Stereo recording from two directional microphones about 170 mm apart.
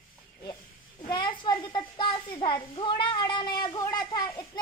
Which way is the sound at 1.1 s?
25° left (ahead or behind).